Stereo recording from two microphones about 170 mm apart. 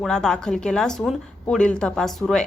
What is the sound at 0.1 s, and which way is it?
A woman's voice, 5° left (ahead or behind).